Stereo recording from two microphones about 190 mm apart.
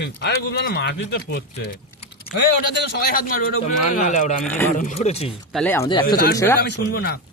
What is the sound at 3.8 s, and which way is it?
Speech, 35° left (ahead or behind).